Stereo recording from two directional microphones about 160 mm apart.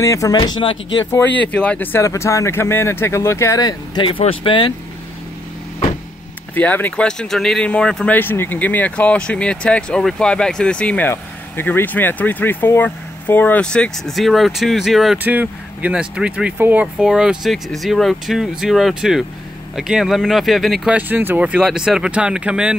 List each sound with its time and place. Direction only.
0.0 s speech: 20° left (ahead or behind)
0.4 s speech: 35° left (ahead or behind)
1.1 s speech: 10° left (ahead or behind); by 4.7 s 30° left (ahead or behind)
6.5 s speech: 10° left (ahead or behind); by 22.8 s 5° right (ahead or behind)